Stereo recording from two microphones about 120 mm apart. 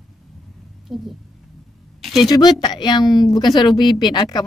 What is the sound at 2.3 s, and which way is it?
Speech, 35° left (ahead or behind).